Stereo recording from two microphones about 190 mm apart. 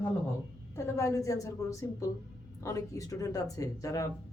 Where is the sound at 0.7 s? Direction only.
15° left (ahead or behind).